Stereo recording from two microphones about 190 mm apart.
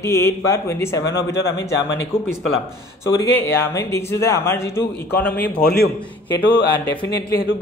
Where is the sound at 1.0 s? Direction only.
65° left (ahead or behind).